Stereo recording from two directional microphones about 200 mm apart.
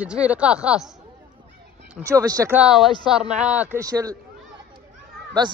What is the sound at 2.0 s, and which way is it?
Speech, 15° right (ahead or behind).